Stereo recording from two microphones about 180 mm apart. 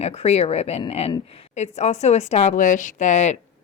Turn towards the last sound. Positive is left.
turn(degrees=40)  # may be behind; listen again after turning